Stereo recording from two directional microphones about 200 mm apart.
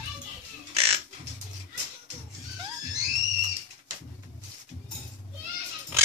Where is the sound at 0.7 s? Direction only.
30° right (ahead or behind).